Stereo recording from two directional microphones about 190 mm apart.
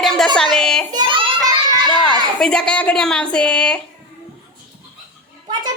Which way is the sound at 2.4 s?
5° left (ahead or behind).